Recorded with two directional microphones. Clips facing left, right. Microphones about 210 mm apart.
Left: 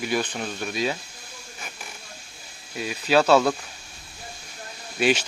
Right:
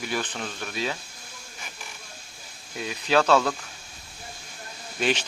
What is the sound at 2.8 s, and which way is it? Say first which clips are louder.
Speech: left 2 dB; 5° left (ahead or behind).